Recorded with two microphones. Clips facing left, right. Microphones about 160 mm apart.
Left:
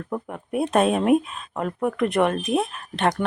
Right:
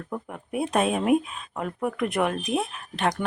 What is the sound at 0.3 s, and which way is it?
Speech, centre (ahead or behind).